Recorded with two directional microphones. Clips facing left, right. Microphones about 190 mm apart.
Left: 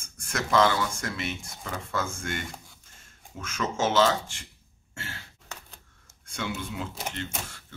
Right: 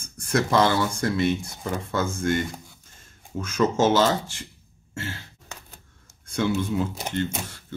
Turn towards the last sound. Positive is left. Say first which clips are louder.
# right 8 dB
turn(degrees=-35)  # may be behind; listen again after turning